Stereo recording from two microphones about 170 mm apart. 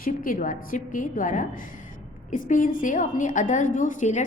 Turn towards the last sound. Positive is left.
turn(degrees=45)  # may be behind; listen again after turning